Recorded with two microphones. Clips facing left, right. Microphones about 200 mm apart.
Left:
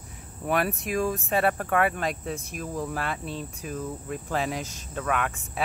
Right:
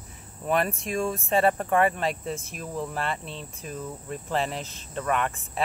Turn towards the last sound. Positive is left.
turn(degrees=5)  # may be behind; listen again after turning